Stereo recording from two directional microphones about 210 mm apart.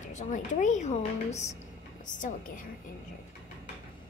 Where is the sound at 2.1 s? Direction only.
40° left (ahead or behind).